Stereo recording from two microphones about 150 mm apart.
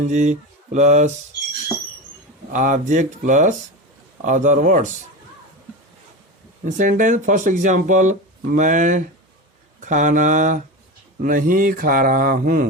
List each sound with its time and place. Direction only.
0.1 s speech: 50° right (ahead or behind)
2.5 s speech: 60° right (ahead or behind)
6.7 s speech: 60° right (ahead or behind)